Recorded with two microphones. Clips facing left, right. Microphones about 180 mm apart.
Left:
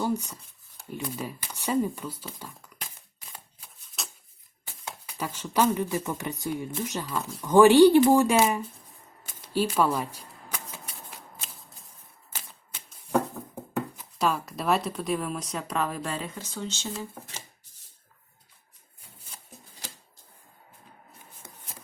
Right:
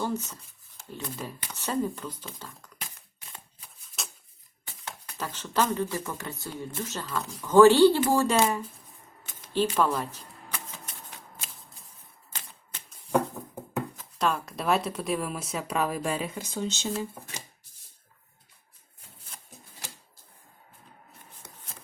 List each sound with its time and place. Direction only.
0.0 s speech: 10° left (ahead or behind)
3.6 s a sound: centre (ahead or behind)
4.9 s speech: 10° left (ahead or behind)
9.5 s typewriter: 10° left (ahead or behind)
12.3 s typewriter: 10° left (ahead or behind)
14.0 s speech: 5° left (ahead or behind); by 16.9 s 20° right (ahead or behind)